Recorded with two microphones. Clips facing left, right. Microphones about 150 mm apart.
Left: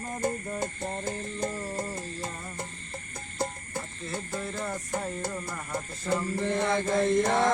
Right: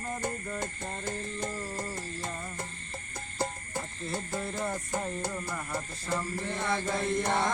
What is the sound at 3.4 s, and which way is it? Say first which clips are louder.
Frog: left 1 dB; 5° right (ahead or behind).